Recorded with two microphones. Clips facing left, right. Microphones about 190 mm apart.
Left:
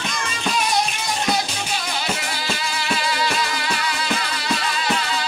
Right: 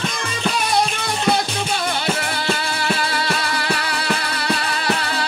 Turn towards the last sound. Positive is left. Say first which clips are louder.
# right 2 dB
turn(degrees=-60)  # may be behind; listen again after turning